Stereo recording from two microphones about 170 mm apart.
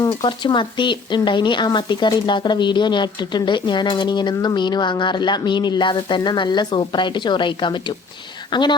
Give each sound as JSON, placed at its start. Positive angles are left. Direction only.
{"t": 0.0, "sound": "speech", "side_deg": 25}